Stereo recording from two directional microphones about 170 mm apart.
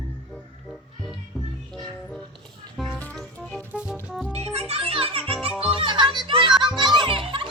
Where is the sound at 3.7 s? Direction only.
5° right (ahead or behind).